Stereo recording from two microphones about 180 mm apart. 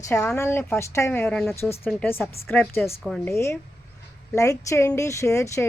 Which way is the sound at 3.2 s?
15° left (ahead or behind).